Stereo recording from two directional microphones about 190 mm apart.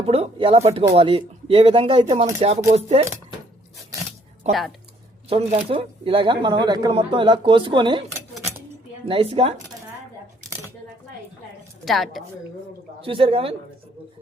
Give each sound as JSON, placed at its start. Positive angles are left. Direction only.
{"t": 0.0, "sound": "speech", "side_deg": -30}
{"t": 5.3, "sound": "speech", "side_deg": -35}
{"t": 9.0, "sound": "speech", "side_deg": -30}
{"t": 11.9, "sound": "a woman's voice", "side_deg": 0}
{"t": 13.0, "sound": "speech", "side_deg": -30}